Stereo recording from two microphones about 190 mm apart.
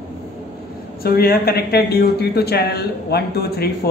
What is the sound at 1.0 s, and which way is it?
Speech, 55° left (ahead or behind).